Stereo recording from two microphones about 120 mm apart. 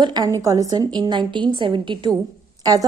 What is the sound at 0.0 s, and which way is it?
A woman's voice, 35° right (ahead or behind).